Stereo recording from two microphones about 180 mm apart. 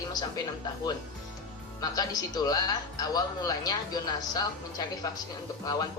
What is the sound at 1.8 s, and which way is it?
Speech, 20° left (ahead or behind).